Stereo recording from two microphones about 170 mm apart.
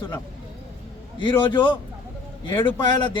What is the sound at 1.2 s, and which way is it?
Speech, 30° left (ahead or behind).